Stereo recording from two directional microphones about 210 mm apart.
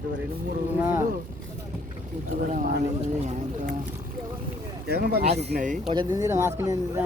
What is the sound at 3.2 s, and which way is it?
Speech, 35° right (ahead or behind).